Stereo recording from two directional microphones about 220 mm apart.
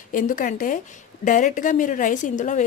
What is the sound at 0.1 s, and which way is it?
A woman's voice, 40° left (ahead or behind).